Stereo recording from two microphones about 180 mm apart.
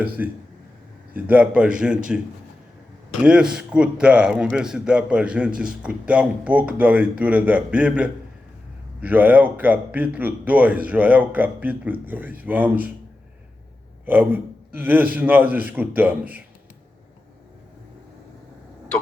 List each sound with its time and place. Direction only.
0.2 s a man's voice: 10° right (ahead or behind)
14.0 s a man's voice: 10° right (ahead or behind)